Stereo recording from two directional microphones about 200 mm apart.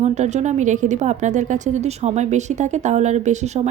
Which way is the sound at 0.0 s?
35° right (ahead or behind).